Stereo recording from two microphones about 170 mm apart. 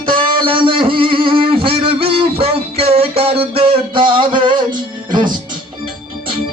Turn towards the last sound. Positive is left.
turn(degrees=-25)  # may be behind; listen again after turning